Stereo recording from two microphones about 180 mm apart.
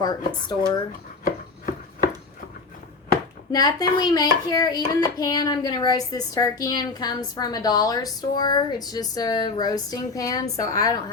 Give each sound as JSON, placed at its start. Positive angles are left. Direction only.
{"t": 0.0, "sound": "a woman's voice", "side_deg": 25}
{"t": 1.2, "sound": "chopping", "side_deg": 50}
{"t": 3.5, "sound": "a woman's voice", "side_deg": 20}